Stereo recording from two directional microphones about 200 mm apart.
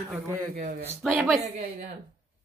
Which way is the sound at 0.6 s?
45° right (ahead or behind).